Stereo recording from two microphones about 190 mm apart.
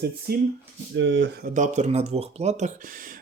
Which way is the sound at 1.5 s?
40° right (ahead or behind).